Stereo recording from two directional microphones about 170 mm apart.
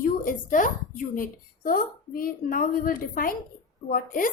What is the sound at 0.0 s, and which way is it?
A woman's voice, 50° left (ahead or behind).